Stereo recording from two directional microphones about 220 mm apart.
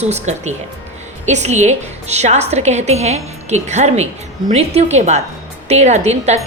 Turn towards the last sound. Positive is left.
turn(degrees=-30)  # may be behind; listen again after turning